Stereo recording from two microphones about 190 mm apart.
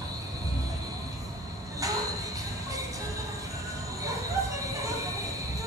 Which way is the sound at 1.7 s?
15° right (ahead or behind).